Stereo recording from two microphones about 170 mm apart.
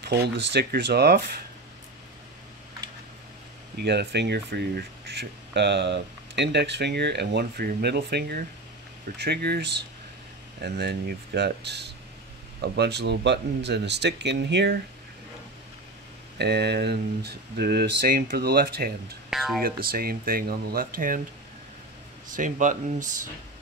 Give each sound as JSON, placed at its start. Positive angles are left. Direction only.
{"t": 0.0, "sound": "speech", "side_deg": -75}
{"t": 3.7, "sound": "speech", "side_deg": -70}
{"t": 10.6, "sound": "speech", "side_deg": -70}
{"t": 16.3, "sound": "speech", "side_deg": -75}
{"t": 19.3, "sound": "speech", "side_deg": 0}
{"t": 19.6, "sound": "speech", "side_deg": -60}
{"t": 22.3, "sound": "speech", "side_deg": -50}